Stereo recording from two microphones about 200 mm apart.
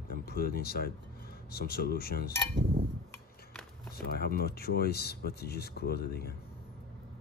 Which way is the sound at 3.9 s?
50° left (ahead or behind).